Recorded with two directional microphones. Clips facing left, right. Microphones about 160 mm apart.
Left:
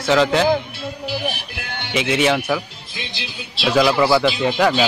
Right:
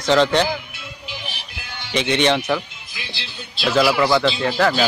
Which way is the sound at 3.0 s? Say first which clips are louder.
Left 3 dB; 20° left (ahead or behind).